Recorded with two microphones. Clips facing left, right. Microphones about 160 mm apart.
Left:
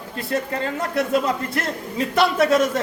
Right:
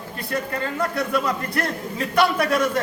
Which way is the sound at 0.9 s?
25° left (ahead or behind).